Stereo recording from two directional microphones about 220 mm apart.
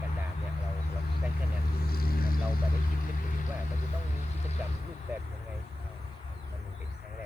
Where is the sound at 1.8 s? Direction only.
45° left (ahead or behind).